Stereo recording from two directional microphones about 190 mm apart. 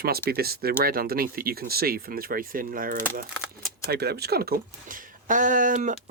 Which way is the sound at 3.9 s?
55° right (ahead or behind).